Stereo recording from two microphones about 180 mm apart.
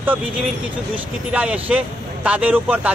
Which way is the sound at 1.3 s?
5° right (ahead or behind).